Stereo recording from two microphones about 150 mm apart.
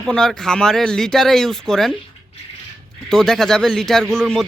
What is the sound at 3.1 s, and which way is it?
Speech, 5° left (ahead or behind).